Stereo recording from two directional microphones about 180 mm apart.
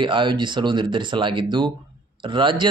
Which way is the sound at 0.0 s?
25° right (ahead or behind).